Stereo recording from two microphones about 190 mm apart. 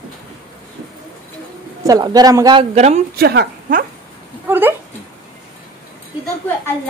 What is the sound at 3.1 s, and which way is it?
Speech, 55° right (ahead or behind).